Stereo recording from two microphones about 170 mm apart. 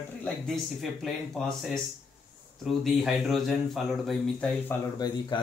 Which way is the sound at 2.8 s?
Centre (ahead or behind).